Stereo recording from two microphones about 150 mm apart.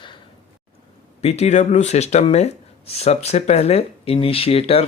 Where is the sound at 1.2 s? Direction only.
45° left (ahead or behind).